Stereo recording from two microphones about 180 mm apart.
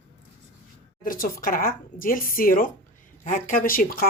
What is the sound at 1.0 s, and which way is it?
Speech, 50° left (ahead or behind).